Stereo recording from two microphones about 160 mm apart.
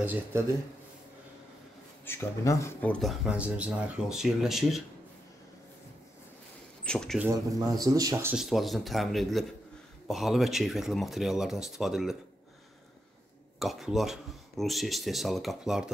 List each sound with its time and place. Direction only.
0.0 s speech: 10° right (ahead or behind)
2.0 s speech: 15° left (ahead or behind); by 4.8 s centre (ahead or behind)
6.8 s speech: 5° left (ahead or behind)
7.2 s speech: 20° right (ahead or behind)
8.4 s speech: centre (ahead or behind)
13.6 s speech: centre (ahead or behind)